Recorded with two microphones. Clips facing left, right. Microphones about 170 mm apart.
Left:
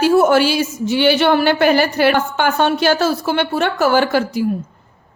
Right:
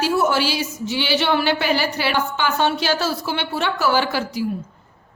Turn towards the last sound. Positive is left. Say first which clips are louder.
# left 6 dB
turn(degrees=55)  # may be behind; listen again after turning